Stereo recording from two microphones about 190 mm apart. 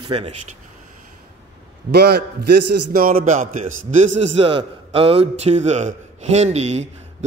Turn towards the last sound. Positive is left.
turn(degrees=-35)  # may be behind; listen again after turning